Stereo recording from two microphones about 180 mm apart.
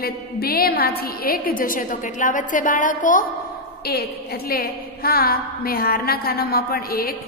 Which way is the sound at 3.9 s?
60° left (ahead or behind).